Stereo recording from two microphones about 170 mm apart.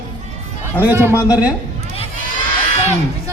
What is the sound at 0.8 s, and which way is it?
Speech, 10° right (ahead or behind).